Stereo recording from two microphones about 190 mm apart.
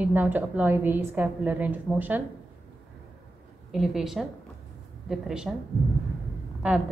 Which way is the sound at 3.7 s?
Centre (ahead or behind).